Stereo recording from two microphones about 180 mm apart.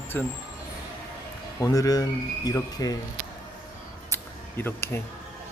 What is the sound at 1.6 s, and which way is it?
Speech, 20° left (ahead or behind).